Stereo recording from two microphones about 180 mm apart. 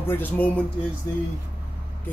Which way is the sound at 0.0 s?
10° left (ahead or behind).